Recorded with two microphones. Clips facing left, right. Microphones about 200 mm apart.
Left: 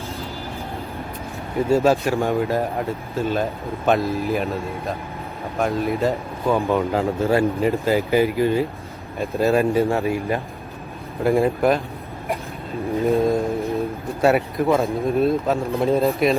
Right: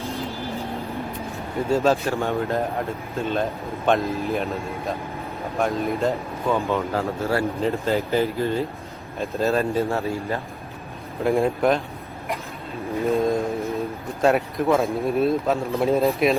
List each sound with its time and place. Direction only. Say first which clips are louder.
1.7 s speech: left 3 dB; 10° left (ahead or behind)
2.4 s speech: left 2 dB; 5° left (ahead or behind)
5.5 s speech: left 2 dB; centre (ahead or behind)
6.5 s speech: left 3 dB; 15° left (ahead or behind)
11.2 s speech: left 2 dB; centre (ahead or behind)
12.9 s speech: left 3 dB; 15° left (ahead or behind)
13.2 s speech: left 2 dB; centre (ahead or behind)